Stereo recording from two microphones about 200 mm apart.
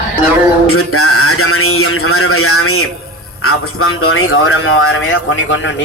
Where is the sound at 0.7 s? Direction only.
90° left.